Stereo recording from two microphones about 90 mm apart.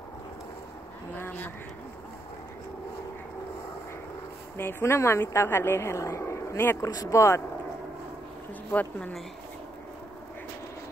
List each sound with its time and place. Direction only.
1.1 s duck: 20° left (ahead or behind)
4.6 s a woman's voice: 25° left (ahead or behind)
6.9 s speech: 40° left (ahead or behind)